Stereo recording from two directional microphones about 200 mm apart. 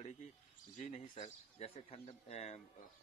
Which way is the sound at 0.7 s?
35° left (ahead or behind).